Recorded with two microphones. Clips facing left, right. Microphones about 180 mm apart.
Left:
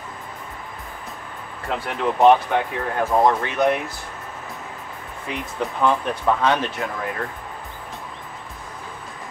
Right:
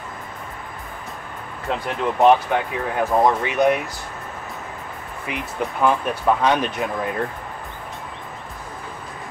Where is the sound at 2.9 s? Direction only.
15° right (ahead or behind).